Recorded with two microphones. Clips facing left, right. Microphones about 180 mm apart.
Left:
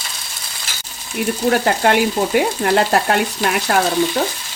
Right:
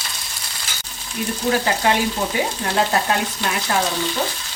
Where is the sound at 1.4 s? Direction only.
55° left (ahead or behind).